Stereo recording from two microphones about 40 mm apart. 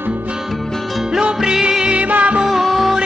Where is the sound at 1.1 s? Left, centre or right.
Centre.